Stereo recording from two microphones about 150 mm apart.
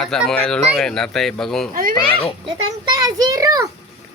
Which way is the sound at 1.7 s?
65° right (ahead or behind).